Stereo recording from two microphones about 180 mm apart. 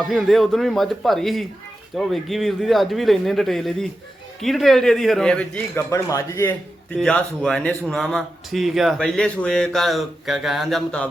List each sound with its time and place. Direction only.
0.0 s a man's voice: centre (ahead or behind); by 6.5 s 15° left (ahead or behind)
6.9 s a man's voice: 5° left (ahead or behind)